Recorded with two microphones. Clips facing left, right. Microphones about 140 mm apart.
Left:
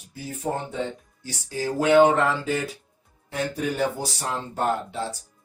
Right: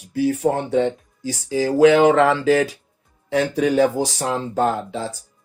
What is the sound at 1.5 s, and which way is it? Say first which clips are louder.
Speech: right 8 dB; 90° right.